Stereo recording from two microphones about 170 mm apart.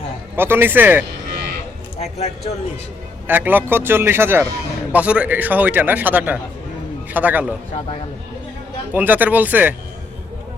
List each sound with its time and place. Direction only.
0.3 s a man's voice: 15° right (ahead or behind)
2.0 s speech: 40° left (ahead or behind)
3.2 s a man's voice: 10° right (ahead or behind)
8.9 s a man's voice: 10° right (ahead or behind)